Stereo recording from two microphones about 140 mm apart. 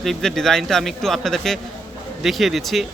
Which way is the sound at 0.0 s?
Centre (ahead or behind).